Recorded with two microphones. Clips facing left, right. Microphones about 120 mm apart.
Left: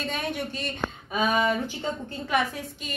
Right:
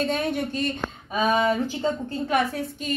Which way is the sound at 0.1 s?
40° right (ahead or behind).